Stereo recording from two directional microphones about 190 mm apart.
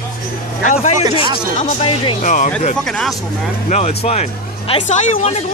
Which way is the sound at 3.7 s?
35° left (ahead or behind).